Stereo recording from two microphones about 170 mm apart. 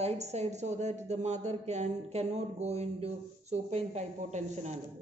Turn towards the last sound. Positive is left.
turn(degrees=-45)  # may be behind; listen again after turning